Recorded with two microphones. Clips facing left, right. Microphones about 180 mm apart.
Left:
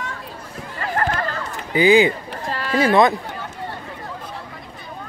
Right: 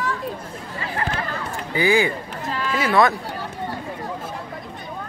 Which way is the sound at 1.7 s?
15° left (ahead or behind).